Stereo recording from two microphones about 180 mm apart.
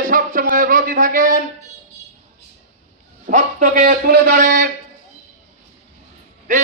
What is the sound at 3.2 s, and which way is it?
A man's voice, 45° right (ahead or behind).